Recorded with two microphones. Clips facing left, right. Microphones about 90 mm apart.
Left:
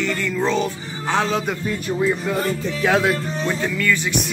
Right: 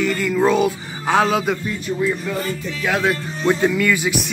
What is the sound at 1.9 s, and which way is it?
Speech, 25° left (ahead or behind).